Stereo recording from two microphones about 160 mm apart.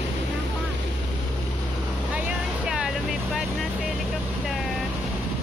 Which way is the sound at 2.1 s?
5° right (ahead or behind).